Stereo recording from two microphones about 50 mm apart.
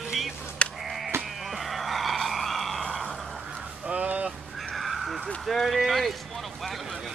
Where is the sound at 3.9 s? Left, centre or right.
Right.